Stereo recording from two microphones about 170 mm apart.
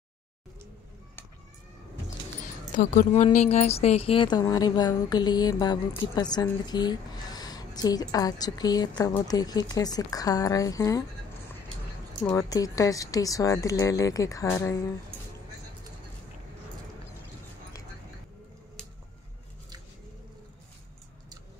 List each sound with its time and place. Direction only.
2.7 s a woman's voice: 50° left (ahead or behind); by 11.1 s 20° left (ahead or behind)
12.3 s speech: 20° left (ahead or behind)